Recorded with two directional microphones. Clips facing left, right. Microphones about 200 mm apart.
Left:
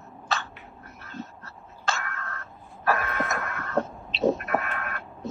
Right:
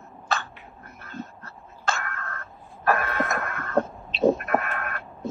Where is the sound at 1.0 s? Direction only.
50° right (ahead or behind).